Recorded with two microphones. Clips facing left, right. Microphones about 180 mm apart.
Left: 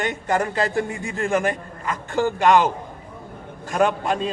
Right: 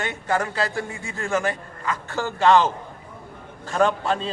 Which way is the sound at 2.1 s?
15° left (ahead or behind).